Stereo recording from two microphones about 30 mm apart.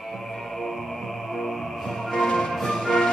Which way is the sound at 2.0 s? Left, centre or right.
Centre.